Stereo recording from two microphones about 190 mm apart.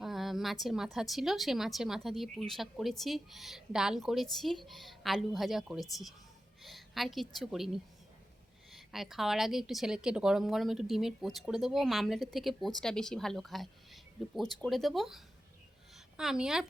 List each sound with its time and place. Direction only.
0.0 s a woman's voice: centre (ahead or behind)